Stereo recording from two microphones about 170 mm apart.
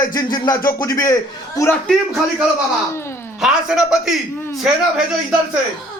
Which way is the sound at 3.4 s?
5° right (ahead or behind).